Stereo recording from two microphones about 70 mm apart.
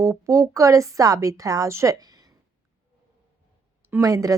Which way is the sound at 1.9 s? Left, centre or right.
Right.